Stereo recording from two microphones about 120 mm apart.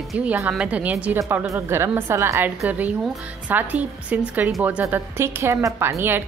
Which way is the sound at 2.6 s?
10° right (ahead or behind).